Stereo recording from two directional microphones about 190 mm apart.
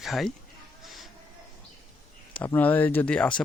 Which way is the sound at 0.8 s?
Centre (ahead or behind).